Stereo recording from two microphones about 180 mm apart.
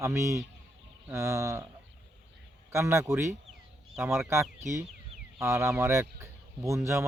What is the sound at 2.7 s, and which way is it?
Speech, 15° right (ahead or behind).